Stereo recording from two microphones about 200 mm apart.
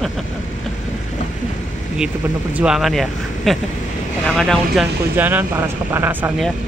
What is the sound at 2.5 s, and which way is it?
Speech, 5° right (ahead or behind).